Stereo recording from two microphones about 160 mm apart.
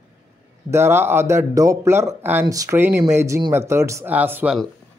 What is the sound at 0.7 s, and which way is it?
A man's voice, 15° right (ahead or behind).